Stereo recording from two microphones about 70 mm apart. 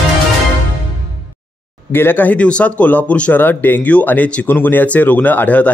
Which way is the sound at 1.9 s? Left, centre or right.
Left.